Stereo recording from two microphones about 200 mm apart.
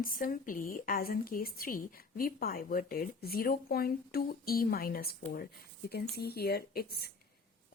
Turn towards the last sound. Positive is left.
turn(degrees=50)  # may be behind; listen again after turning